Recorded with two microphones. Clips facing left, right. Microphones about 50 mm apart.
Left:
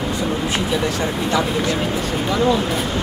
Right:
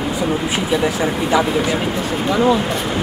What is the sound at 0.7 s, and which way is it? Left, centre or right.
Speech, centre.